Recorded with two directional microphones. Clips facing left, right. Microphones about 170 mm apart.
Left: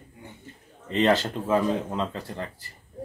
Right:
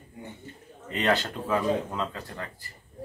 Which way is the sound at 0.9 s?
30° left (ahead or behind).